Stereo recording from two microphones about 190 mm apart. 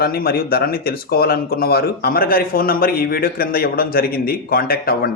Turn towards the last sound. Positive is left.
turn(degrees=50)  # may be behind; listen again after turning